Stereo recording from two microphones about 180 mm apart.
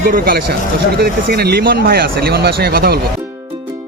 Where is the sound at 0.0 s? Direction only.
55° right (ahead or behind).